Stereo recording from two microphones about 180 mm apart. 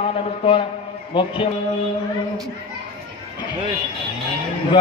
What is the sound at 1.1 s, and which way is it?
Speech, 30° left (ahead or behind).